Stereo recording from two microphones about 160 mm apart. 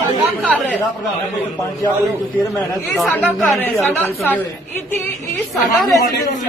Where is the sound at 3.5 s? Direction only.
15° left (ahead or behind).